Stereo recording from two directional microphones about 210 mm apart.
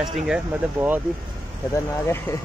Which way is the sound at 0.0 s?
5° right (ahead or behind).